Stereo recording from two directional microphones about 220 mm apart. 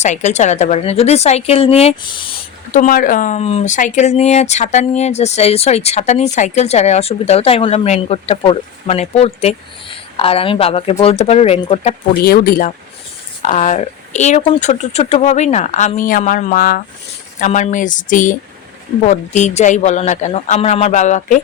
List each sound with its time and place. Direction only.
0.0 s speech: 30° left (ahead or behind)
2.7 s speech: 40° left (ahead or behind)
12.2 s speech: 40° left (ahead or behind)